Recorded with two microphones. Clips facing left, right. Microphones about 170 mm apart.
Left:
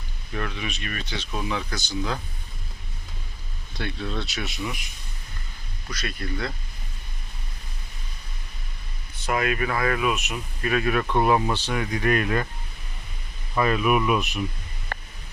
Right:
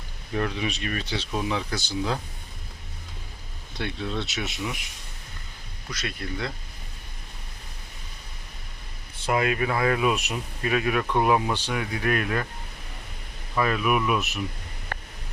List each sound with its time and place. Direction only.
0.3 s speech: 30° right (ahead or behind)
3.8 s speech: 20° right (ahead or behind)
5.9 s speech: 20° right (ahead or behind)
9.2 s speech: 25° right (ahead or behind)
10.3 s speech: 20° right (ahead or behind); by 12.5 s centre (ahead or behind)
13.6 s speech: centre (ahead or behind)